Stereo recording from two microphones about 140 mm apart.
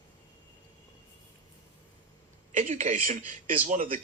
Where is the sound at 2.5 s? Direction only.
60° right (ahead or behind).